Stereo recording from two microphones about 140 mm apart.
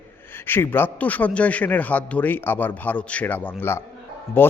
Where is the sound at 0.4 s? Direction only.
15° left (ahead or behind).